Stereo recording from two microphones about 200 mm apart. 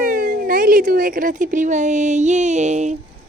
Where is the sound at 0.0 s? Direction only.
45° right (ahead or behind).